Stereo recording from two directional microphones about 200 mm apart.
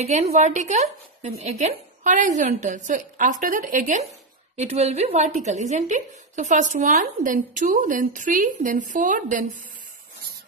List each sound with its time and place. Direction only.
0.0 s a woman's voice: 35° right (ahead or behind)